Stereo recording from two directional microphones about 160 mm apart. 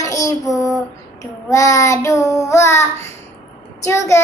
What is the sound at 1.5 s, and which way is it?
Child singing, 20° left (ahead or behind).